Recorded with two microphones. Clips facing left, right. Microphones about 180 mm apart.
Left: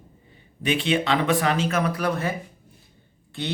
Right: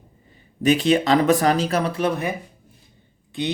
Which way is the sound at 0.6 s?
40° right (ahead or behind).